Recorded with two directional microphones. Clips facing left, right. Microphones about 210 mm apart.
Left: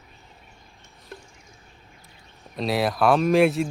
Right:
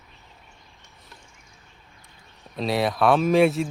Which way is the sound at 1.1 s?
50° left (ahead or behind).